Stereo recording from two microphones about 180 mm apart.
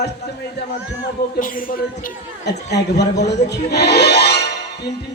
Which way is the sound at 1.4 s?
50° left (ahead or behind).